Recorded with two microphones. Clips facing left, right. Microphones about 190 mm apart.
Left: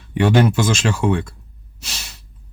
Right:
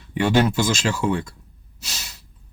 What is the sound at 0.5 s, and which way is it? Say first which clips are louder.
Speech: left 3 dB; 55° left (ahead or behind).